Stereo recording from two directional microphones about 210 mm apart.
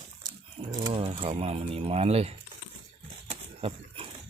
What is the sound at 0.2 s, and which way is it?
Speech, 20° right (ahead or behind).